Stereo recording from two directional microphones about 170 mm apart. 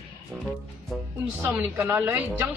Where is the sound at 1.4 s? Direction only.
10° right (ahead or behind).